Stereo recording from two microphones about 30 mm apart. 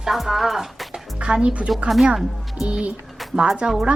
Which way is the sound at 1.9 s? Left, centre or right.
Centre.